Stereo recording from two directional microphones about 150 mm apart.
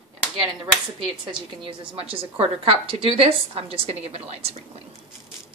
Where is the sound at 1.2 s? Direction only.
35° right (ahead or behind).